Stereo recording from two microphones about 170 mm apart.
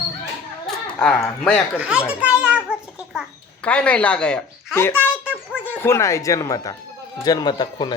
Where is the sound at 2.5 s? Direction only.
5° right (ahead or behind).